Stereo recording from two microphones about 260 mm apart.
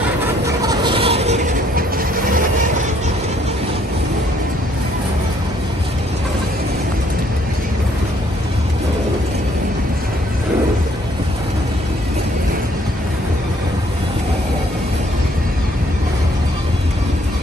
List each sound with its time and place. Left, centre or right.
0.6 s train: centre; by 2.4 s right